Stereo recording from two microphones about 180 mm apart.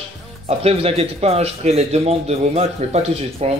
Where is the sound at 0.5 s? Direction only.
35° right (ahead or behind).